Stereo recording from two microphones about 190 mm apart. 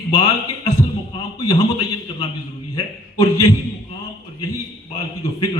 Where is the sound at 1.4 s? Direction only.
20° left (ahead or behind).